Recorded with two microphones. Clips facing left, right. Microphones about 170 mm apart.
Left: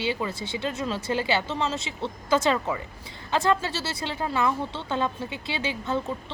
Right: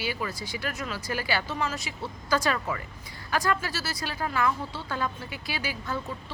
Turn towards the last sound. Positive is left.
turn(degrees=25)  # may be behind; listen again after turning